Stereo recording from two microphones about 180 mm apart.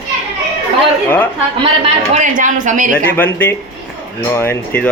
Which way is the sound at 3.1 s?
10° left (ahead or behind).